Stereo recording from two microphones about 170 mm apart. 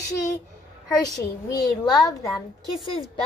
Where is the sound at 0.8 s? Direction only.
20° left (ahead or behind).